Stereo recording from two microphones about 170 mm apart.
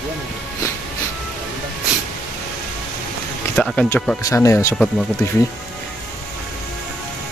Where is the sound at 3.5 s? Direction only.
5° left (ahead or behind).